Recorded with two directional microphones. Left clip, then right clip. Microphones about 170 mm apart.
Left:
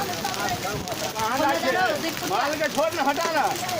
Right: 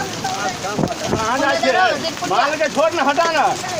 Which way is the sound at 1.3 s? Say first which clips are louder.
Right 6 dB; 45° right (ahead or behind).